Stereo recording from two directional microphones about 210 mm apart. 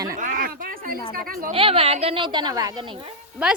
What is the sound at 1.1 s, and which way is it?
Speech, 45° right (ahead or behind).